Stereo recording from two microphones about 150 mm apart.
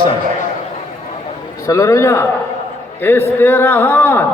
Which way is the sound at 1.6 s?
20° left (ahead or behind).